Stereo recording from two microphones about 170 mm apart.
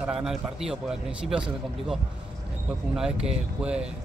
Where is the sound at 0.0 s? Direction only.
5° right (ahead or behind).